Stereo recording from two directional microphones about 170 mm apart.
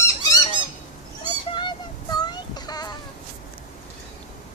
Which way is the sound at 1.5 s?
25° left (ahead or behind).